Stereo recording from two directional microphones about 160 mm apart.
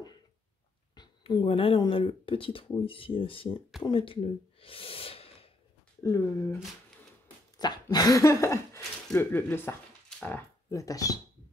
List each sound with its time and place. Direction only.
0.9 s speech: 25° left (ahead or behind)
6.0 s speech: 20° left (ahead or behind)